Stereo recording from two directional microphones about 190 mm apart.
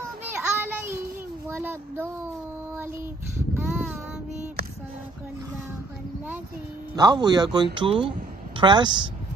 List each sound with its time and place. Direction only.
0.2 s child singing: 10° right (ahead or behind)
1.5 s speech: 10° right (ahead or behind)
2.7 s child singing: 15° right (ahead or behind)
7.0 s speech: 20° right (ahead or behind)